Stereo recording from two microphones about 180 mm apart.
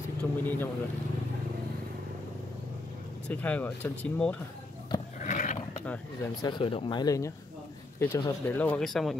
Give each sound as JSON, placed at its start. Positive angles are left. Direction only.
{"t": 0.2, "sound": "speech", "side_deg": 10}
{"t": 3.3, "sound": "speech", "side_deg": 10}
{"t": 5.2, "sound": "a sound", "side_deg": 45}
{"t": 6.4, "sound": "speech", "side_deg": 30}